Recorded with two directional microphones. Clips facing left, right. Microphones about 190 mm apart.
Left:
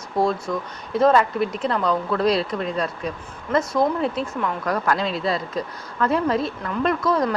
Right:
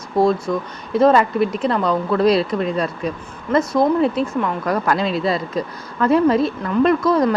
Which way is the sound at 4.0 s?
5° right (ahead or behind).